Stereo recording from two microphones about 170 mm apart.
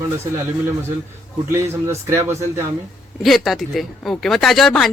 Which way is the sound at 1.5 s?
15° right (ahead or behind).